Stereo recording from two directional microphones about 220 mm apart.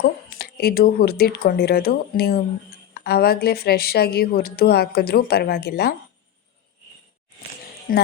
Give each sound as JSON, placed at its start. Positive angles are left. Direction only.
{"t": 0.0, "sound": "speech", "side_deg": 45}
{"t": 7.9, "sound": "speech", "side_deg": 40}